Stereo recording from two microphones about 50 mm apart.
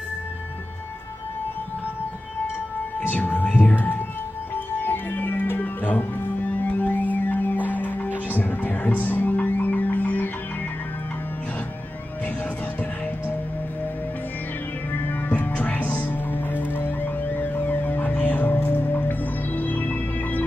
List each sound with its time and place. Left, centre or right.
3.0 s music: left
15.0 s music: left